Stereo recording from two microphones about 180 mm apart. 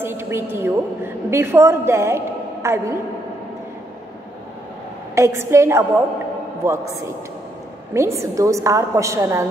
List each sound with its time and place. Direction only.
0.0 s a woman's voice: 15° right (ahead or behind)
5.1 s a woman's voice: 15° right (ahead or behind)
7.9 s a woman's voice: 15° right (ahead or behind)